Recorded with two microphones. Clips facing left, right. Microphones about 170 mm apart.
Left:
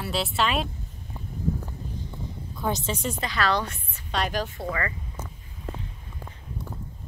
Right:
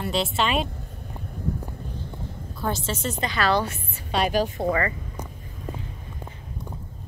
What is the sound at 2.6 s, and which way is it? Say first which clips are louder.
Speech: even; 15° left (ahead or behind).